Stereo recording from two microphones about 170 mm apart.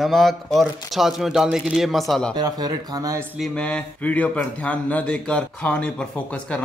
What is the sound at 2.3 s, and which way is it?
Speech, 25° right (ahead or behind).